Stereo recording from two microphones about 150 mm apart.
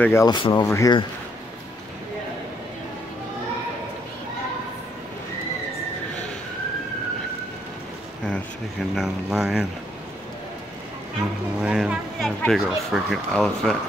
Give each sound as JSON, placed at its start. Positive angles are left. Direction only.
{"t": 0.0, "sound": "speech", "side_deg": 15}
{"t": 0.3, "sound": "speech", "side_deg": 30}
{"t": 8.9, "sound": "speech", "side_deg": -5}
{"t": 11.6, "sound": "speech", "side_deg": -5}